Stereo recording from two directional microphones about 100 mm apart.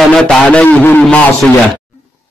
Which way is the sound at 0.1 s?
5° left (ahead or behind).